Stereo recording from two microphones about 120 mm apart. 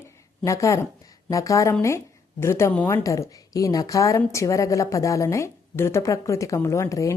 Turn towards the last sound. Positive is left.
turn(degrees=25)  # may be behind; listen again after turning